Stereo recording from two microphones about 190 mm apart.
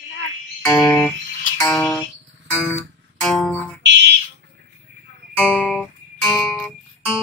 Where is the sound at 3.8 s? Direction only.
65° right (ahead or behind).